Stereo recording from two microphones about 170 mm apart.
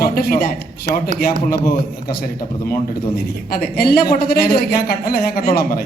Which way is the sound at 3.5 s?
60° left (ahead or behind).